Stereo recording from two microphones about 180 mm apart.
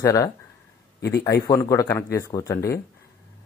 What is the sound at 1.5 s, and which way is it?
Speech, 20° left (ahead or behind).